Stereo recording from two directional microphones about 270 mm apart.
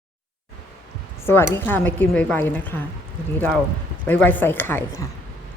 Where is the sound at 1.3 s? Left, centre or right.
Centre.